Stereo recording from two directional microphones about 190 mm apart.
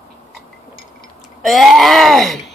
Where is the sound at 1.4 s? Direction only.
Centre (ahead or behind).